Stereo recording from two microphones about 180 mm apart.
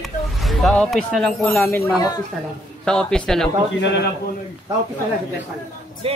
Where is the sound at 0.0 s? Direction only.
Centre (ahead or behind).